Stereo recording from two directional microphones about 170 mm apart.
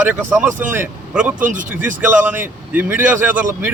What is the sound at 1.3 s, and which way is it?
Speech, 50° right (ahead or behind).